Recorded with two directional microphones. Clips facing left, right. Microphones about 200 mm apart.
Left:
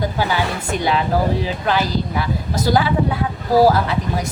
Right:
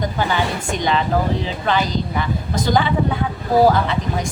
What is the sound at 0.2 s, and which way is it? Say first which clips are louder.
Speech: even; 10° left (ahead or behind).